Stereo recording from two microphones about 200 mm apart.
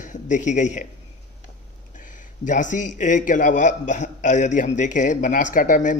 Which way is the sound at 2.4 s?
40° left (ahead or behind).